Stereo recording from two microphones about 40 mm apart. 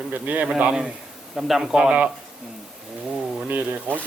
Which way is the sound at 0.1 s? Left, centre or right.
Right.